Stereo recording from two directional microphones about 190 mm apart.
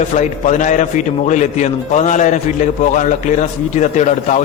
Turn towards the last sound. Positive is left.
turn(degrees=40)  # may be behind; listen again after turning